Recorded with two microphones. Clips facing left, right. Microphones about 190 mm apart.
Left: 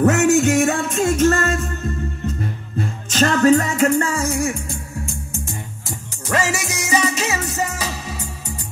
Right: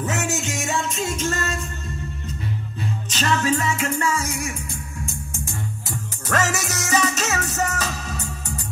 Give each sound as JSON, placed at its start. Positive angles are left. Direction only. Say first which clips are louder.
{"t": 0.0, "sound": "music", "louder": "left 11 dB", "side_deg": 65}
{"t": 2.8, "sound": "music", "louder": "left 8 dB", "side_deg": 50}
{"t": 6.3, "sound": "music", "louder": "left 2 dB", "side_deg": 10}